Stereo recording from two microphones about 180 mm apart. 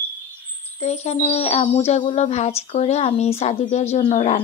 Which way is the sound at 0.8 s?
35° left (ahead or behind).